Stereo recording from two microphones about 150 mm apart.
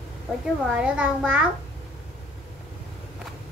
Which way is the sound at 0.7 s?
5° right (ahead or behind).